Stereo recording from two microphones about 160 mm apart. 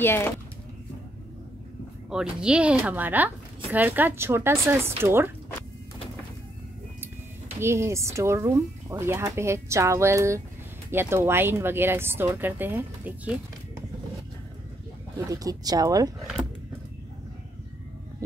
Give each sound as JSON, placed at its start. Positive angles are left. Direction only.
{"t": 0.0, "sound": "speech", "side_deg": 15}
{"t": 2.0, "sound": "speech", "side_deg": -5}
{"t": 7.6, "sound": "speech", "side_deg": -15}
{"t": 15.1, "sound": "speech", "side_deg": -20}